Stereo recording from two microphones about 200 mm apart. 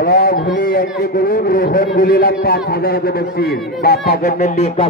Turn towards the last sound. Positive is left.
turn(degrees=30)  # may be behind; listen again after turning